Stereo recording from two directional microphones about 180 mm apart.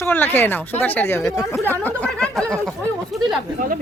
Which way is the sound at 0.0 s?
10° left (ahead or behind).